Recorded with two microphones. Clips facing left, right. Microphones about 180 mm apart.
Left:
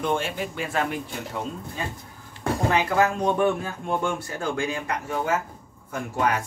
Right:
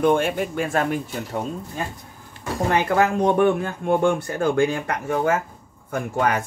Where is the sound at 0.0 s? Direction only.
55° right (ahead or behind).